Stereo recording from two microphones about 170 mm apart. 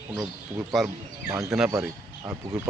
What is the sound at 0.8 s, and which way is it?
Speech, 15° right (ahead or behind).